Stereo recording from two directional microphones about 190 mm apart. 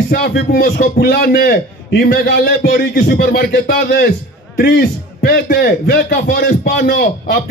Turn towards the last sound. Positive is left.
turn(degrees=60)  # may be behind; listen again after turning